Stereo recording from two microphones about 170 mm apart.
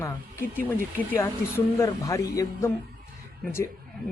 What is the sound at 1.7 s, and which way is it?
Speech, 20° left (ahead or behind).